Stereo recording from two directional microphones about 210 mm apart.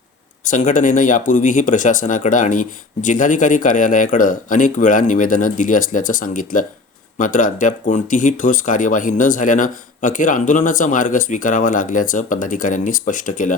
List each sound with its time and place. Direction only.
0.4 s speech: 40° left (ahead or behind)